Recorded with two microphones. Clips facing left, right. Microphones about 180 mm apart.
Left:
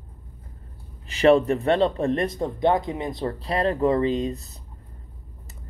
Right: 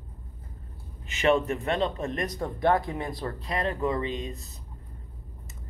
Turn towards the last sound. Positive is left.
turn(degrees=35)  # may be behind; listen again after turning